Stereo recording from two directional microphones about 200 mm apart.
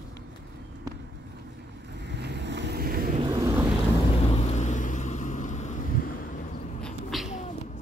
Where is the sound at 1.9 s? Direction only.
60° right (ahead or behind).